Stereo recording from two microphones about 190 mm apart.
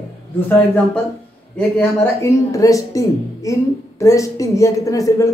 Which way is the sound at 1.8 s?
15° left (ahead or behind).